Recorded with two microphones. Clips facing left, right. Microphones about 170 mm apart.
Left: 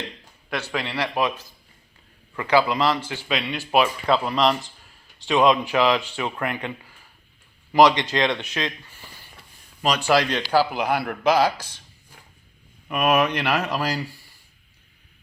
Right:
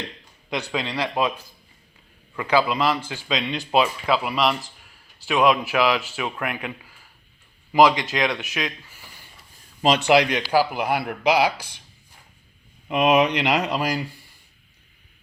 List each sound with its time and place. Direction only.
0.5 s speech: 15° right (ahead or behind)
2.3 s speech: 15° right (ahead or behind)
4.0 s speech: 5° right (ahead or behind)
9.8 s speech: 25° right (ahead or behind)
12.9 s speech: 20° right (ahead or behind)